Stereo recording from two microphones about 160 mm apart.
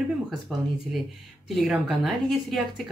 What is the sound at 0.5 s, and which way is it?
Speech, 5° left (ahead or behind).